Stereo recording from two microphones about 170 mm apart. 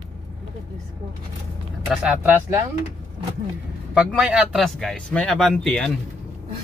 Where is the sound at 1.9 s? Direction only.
5° right (ahead or behind).